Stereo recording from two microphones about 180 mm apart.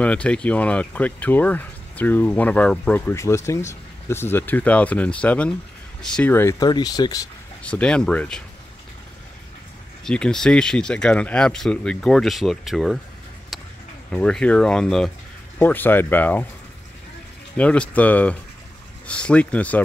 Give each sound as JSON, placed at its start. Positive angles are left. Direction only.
{"t": 0.0, "sound": "speech", "side_deg": 5}
{"t": 7.6, "sound": "speech", "side_deg": 5}
{"t": 10.0, "sound": "speech", "side_deg": 5}
{"t": 14.1, "sound": "speech", "side_deg": 5}
{"t": 17.6, "sound": "speech", "side_deg": 5}